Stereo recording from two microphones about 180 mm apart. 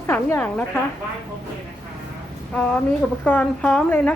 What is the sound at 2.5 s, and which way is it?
A woman's voice, 10° left (ahead or behind).